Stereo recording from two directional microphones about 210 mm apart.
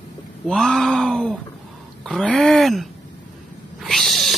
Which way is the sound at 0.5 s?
5° left (ahead or behind).